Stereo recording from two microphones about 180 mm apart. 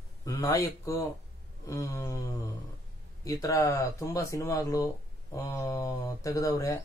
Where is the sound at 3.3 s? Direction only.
20° left (ahead or behind).